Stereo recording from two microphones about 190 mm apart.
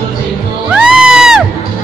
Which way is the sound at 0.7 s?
5° right (ahead or behind).